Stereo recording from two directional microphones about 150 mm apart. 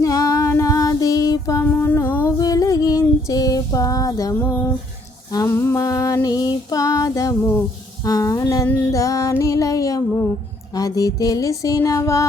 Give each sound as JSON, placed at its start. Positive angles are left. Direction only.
{"t": 0.0, "sound": "female singing", "side_deg": 25}
{"t": 8.0, "sound": "music", "side_deg": 20}